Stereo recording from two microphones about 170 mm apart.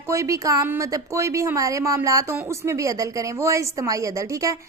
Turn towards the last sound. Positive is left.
turn(degrees=-20)  # may be behind; listen again after turning